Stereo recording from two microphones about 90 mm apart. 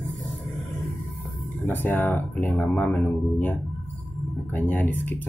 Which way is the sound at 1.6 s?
20° left (ahead or behind).